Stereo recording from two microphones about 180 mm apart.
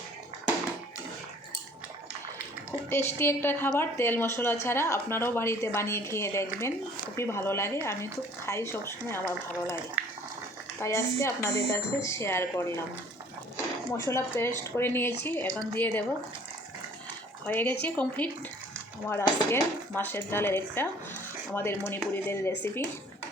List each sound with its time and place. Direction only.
2.9 s a woman's voice: 15° left (ahead or behind)
10.8 s a woman's voice: 15° left (ahead or behind)
13.9 s a woman's voice: 15° left (ahead or behind)
17.4 s a woman's voice: 10° left (ahead or behind)